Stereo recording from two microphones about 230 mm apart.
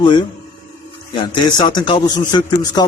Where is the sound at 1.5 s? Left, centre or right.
Centre.